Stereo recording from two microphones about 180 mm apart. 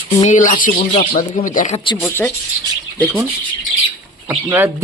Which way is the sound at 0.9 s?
30° left (ahead or behind).